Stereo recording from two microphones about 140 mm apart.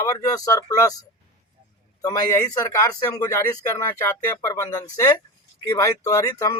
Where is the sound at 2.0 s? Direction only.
25° left (ahead or behind).